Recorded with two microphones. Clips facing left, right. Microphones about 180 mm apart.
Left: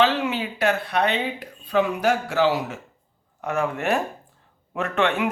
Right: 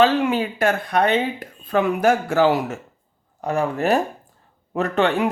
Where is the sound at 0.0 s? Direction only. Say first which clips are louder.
Right 4 dB; 45° right (ahead or behind).